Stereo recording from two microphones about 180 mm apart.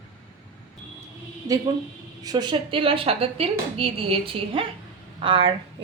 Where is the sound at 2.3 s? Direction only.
25° right (ahead or behind).